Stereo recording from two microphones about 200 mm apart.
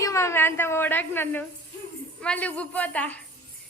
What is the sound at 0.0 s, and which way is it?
A woman's voice, 15° left (ahead or behind).